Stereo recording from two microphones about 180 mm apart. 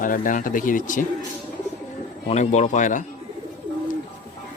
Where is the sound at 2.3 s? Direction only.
40° left (ahead or behind).